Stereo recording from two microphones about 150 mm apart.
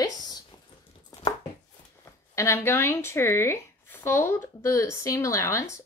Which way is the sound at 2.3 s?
20° left (ahead or behind).